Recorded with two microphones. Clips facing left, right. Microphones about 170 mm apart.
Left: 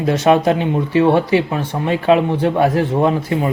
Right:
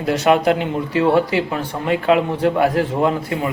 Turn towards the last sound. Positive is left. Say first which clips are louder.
# left 3 dB
turn(degrees=25)  # may be behind; listen again after turning